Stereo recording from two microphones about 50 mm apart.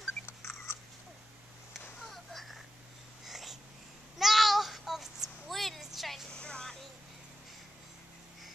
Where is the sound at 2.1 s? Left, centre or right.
Centre.